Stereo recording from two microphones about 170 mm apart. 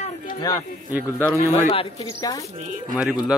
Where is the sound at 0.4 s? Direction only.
20° left (ahead or behind).